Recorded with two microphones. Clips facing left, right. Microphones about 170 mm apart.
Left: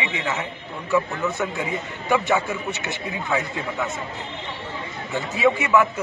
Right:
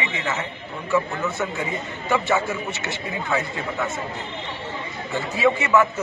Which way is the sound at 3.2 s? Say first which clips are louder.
Even; centre (ahead or behind).